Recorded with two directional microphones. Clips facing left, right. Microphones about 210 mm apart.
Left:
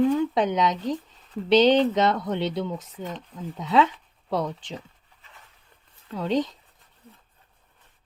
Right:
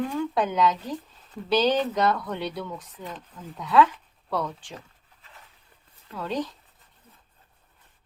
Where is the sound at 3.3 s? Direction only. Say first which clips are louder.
Right 1 dB; 20° left (ahead or behind).